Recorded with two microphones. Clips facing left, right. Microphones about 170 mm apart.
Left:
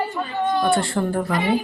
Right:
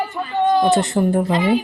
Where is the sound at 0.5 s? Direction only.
20° right (ahead or behind).